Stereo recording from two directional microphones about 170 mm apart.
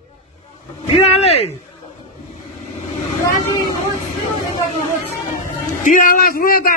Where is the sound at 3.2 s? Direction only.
25° left (ahead or behind).